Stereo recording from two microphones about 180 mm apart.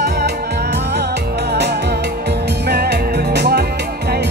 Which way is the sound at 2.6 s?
65° right (ahead or behind).